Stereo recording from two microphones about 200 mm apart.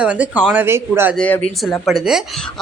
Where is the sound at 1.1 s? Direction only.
5° left (ahead or behind).